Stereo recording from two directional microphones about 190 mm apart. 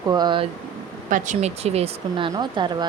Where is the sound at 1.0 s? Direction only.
40° right (ahead or behind); by 2.8 s 25° right (ahead or behind).